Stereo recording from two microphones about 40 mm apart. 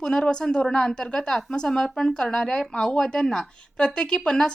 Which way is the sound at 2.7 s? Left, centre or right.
Left.